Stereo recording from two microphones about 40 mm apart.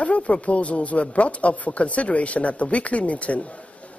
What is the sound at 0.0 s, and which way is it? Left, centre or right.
Speech, left.